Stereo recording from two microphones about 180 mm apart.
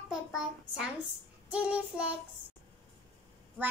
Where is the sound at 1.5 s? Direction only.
5° right (ahead or behind).